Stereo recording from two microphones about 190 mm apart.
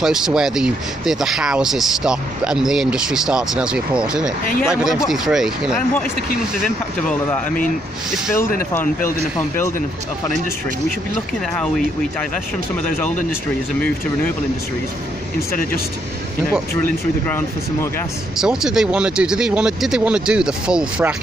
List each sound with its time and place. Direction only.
0.0 s speech: centre (ahead or behind)
18.4 s speech: 5° right (ahead or behind)